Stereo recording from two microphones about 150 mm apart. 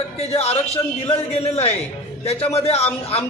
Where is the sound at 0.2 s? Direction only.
40° left (ahead or behind).